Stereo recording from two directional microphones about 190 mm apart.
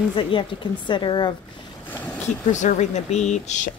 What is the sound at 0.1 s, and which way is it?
Speech, 25° left (ahead or behind).